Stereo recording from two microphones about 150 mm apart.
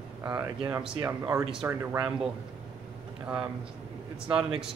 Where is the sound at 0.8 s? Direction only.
15° right (ahead or behind).